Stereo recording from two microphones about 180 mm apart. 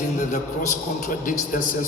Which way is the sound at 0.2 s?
40° left (ahead or behind).